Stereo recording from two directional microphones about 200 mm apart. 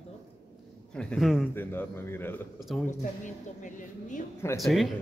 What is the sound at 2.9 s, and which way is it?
A woman's voice, 40° left (ahead or behind).